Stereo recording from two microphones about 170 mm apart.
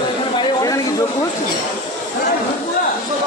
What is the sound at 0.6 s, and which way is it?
Speech, 20° left (ahead or behind).